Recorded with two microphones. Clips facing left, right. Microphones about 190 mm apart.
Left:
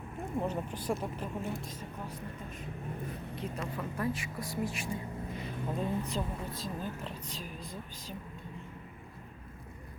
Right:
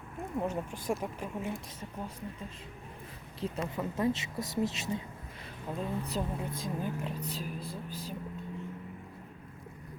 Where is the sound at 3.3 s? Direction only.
25° right (ahead or behind).